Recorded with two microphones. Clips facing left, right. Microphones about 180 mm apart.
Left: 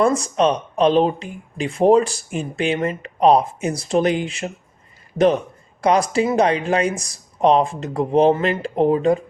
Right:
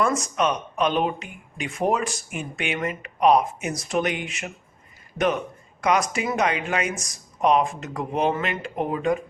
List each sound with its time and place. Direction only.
0.0 s speech: 30° left (ahead or behind)